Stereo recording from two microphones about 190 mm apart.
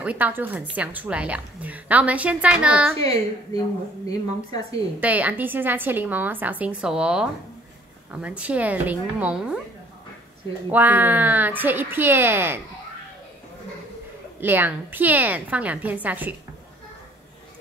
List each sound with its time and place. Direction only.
0.0 s a woman's voice: 10° right (ahead or behind)
3.0 s a woman's voice: 20° left (ahead or behind)
5.0 s a woman's voice: 10° right (ahead or behind)
10.7 s a woman's voice: 10° right (ahead or behind)
14.4 s a woman's voice: 10° right (ahead or behind)